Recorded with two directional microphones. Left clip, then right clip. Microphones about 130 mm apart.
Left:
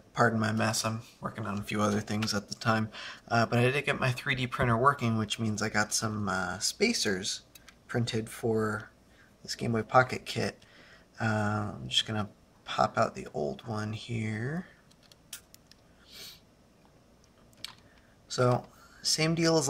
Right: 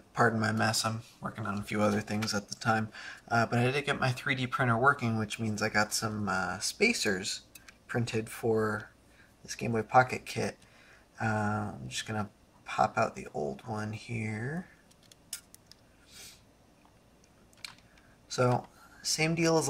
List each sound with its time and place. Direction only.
0.2 s speech: 20° left (ahead or behind)
9.6 s speech: 25° left (ahead or behind)
15.0 s tick-tock: 20° left (ahead or behind)
18.3 s a sound: 25° left (ahead or behind)
19.1 s speech: 25° left (ahead or behind)